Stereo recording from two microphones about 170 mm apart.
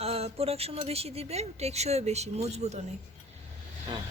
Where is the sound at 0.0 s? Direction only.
35° right (ahead or behind).